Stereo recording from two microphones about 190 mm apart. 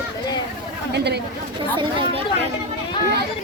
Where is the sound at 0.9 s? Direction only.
60° right (ahead or behind).